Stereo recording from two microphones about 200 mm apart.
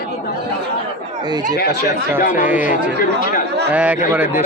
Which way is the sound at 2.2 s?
40° left (ahead or behind).